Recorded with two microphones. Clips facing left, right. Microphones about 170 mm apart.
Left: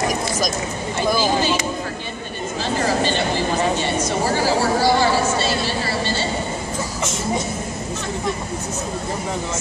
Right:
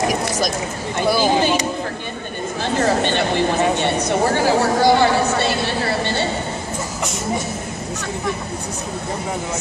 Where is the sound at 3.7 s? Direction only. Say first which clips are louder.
Right 3 dB; 60° right (ahead or behind).